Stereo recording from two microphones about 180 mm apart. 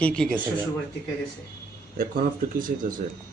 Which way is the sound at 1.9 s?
50° right (ahead or behind).